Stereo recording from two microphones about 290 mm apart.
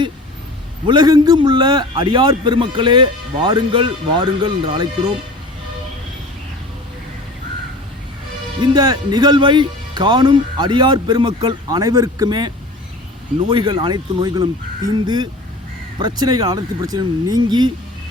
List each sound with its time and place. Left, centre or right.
0.9 s a man's voice: centre
8.6 s a man's voice: centre
13.5 s a man's voice: centre